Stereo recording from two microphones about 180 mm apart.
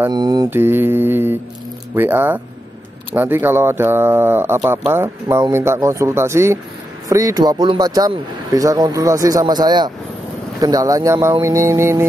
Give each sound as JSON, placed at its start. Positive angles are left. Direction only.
{"t": 0.1, "sound": "speech", "side_deg": -20}
{"t": 0.5, "sound": "speech", "side_deg": -10}